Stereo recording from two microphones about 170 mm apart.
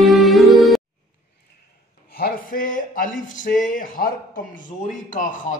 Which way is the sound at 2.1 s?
60° left (ahead or behind).